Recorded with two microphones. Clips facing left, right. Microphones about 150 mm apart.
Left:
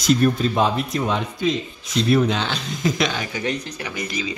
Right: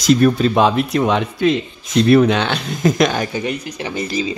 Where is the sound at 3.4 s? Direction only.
10° right (ahead or behind).